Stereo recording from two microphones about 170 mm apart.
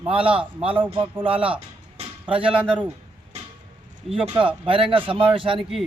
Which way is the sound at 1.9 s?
30° right (ahead or behind).